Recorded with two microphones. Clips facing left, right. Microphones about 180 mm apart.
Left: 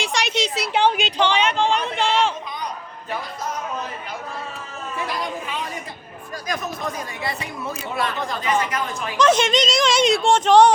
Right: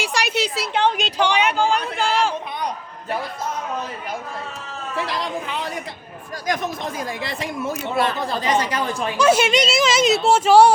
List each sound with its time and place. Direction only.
0.1 s a woman's voice: 5° right (ahead or behind)
0.7 s a woman's voice: 10° left (ahead or behind)
1.2 s speech: 10° right (ahead or behind)
4.9 s a sound: 75° right (ahead or behind)
7.9 s speech: 30° right (ahead or behind)
9.1 s speech: 10° right (ahead or behind)